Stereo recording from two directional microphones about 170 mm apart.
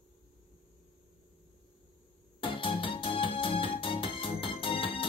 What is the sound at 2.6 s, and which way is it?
Music, 30° left (ahead or behind).